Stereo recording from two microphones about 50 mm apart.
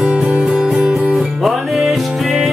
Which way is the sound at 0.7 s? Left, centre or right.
Centre.